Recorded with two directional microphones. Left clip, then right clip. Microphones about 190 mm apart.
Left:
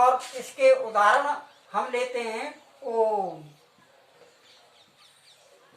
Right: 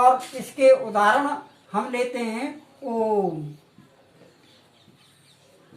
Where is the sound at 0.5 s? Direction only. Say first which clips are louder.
Right 3 dB; 5° left (ahead or behind).